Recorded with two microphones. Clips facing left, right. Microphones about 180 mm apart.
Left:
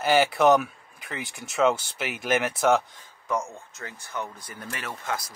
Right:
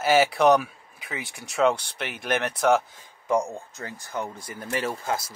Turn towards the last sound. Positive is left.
turn(degrees=-30)  # may be behind; listen again after turning